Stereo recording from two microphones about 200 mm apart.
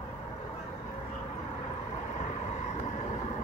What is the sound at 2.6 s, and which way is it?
Vehicle, 35° left (ahead or behind).